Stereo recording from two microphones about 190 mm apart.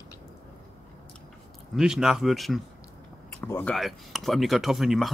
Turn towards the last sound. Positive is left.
turn(degrees=0)  # may be behind; listen again after turning